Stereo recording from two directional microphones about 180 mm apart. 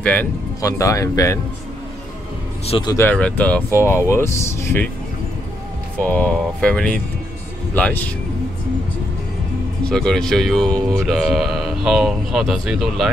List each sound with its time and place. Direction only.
0.0 s speech: 10° left (ahead or behind)
2.6 s speech: 35° left (ahead or behind)
2.9 s speech: 10° left (ahead or behind)
5.9 s speech: 5° left (ahead or behind)
9.8 s speech: 5° left (ahead or behind)